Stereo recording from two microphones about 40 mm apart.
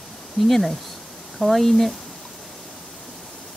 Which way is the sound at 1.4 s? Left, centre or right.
Centre.